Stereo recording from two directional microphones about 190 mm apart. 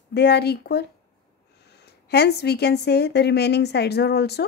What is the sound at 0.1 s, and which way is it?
Speech, 60° left (ahead or behind).